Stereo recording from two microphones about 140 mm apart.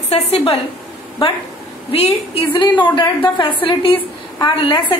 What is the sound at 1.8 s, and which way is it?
A woman's voice, 45° left (ahead or behind).